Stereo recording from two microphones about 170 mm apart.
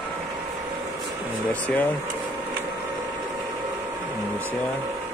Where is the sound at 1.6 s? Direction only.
10° left (ahead or behind).